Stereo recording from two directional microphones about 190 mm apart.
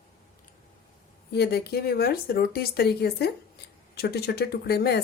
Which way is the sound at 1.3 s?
55° left (ahead or behind).